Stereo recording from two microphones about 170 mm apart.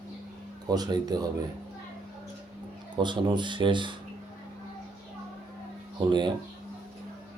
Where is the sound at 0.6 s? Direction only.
20° right (ahead or behind).